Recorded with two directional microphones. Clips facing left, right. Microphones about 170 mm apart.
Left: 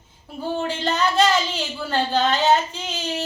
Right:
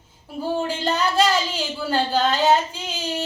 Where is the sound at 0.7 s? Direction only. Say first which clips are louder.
Even; 10° right (ahead or behind).